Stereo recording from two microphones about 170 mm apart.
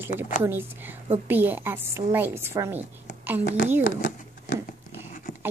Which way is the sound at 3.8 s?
50° left (ahead or behind).